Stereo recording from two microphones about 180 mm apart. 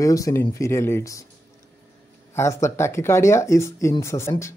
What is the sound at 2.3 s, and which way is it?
Speech, 15° left (ahead or behind).